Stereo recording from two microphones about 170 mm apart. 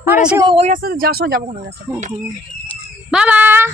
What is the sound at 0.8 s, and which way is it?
Speech, 60° right (ahead or behind).